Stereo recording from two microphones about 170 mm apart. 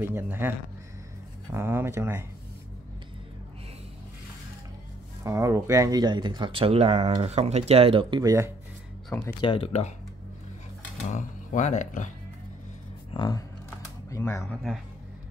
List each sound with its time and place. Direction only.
0.0 s speech: 15° right (ahead or behind)
1.5 s speech: 15° right (ahead or behind)
5.2 s speech: 15° right (ahead or behind)
9.4 s speech: 30° left (ahead or behind)
11.1 s speech: 45° left (ahead or behind)
13.1 s speech: 25° left (ahead or behind)
14.4 s speech: centre (ahead or behind)